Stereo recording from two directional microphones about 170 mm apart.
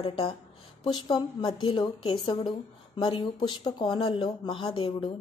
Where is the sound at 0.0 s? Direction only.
30° left (ahead or behind).